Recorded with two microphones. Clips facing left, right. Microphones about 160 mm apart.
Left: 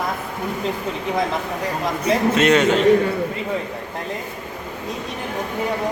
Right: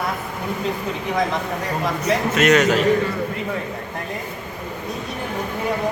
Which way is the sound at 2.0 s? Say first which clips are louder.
Left 2 dB; 30° left (ahead or behind).